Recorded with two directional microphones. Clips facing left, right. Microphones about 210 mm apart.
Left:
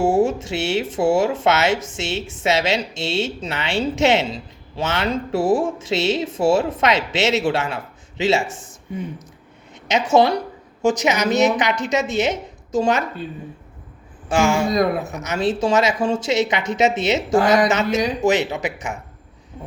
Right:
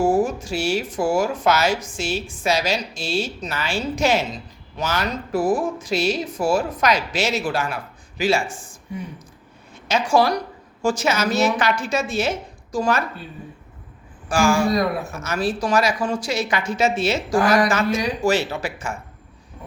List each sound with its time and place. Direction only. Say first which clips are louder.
0.0 s speech: left 2 dB; 25° left (ahead or behind)
9.9 s speech: left 2 dB; 20° left (ahead or behind)
14.3 s speech: even; 20° left (ahead or behind)